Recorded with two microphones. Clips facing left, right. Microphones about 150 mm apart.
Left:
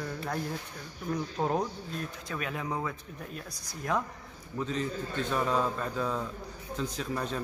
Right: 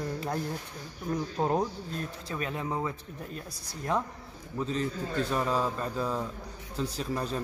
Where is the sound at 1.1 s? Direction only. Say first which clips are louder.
Right 2 dB; 10° right (ahead or behind).